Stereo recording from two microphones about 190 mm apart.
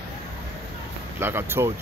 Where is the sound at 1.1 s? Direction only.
10° right (ahead or behind).